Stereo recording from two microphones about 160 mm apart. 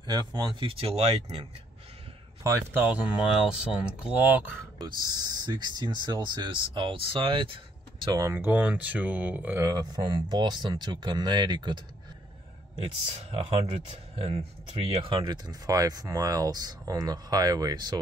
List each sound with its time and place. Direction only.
0.0 s speech: 25° right (ahead or behind); by 1.4 s 40° right (ahead or behind)
2.4 s speech: 15° right (ahead or behind)
4.7 s speech: 25° right (ahead or behind)
8.0 s speech: 25° right (ahead or behind)
13.2 s speech: 35° right (ahead or behind)